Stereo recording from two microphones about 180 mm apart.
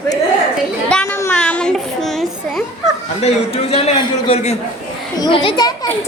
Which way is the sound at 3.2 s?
35° left (ahead or behind).